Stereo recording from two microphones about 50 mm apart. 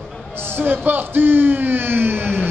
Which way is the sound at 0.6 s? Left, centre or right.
Right.